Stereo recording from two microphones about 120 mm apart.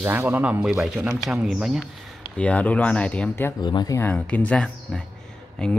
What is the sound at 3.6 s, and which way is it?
Speech, 35° left (ahead or behind).